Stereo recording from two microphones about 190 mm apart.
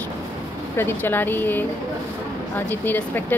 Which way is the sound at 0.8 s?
10° left (ahead or behind).